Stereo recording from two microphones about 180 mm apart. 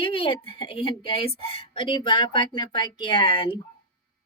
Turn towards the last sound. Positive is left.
turn(degrees=30)  # may be behind; listen again after turning